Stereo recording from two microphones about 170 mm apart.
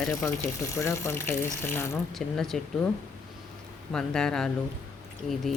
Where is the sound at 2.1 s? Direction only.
Centre (ahead or behind).